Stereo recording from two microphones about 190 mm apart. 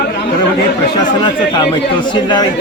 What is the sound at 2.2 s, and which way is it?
Speech, 25° left (ahead or behind).